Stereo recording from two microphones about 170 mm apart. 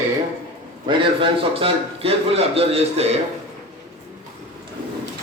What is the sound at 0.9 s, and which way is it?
A man's voice, 30° right (ahead or behind).